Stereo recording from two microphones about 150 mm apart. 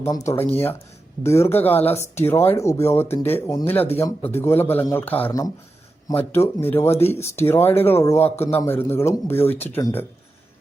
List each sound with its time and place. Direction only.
0.0 s speech: 20° left (ahead or behind)